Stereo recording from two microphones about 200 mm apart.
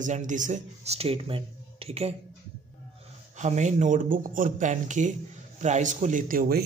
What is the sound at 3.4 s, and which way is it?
Speech, 35° right (ahead or behind).